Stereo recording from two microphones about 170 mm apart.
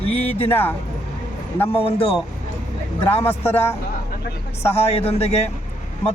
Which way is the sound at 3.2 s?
10° left (ahead or behind).